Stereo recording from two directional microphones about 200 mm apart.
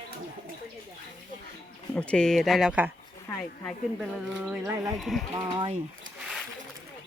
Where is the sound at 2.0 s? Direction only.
5° left (ahead or behind).